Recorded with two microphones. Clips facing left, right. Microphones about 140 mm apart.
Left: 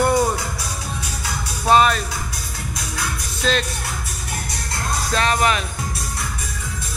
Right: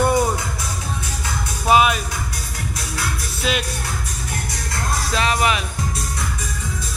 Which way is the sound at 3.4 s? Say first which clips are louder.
Left 2 dB; 10° right (ahead or behind).